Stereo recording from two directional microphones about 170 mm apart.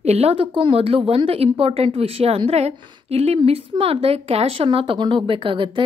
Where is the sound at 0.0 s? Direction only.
35° right (ahead or behind).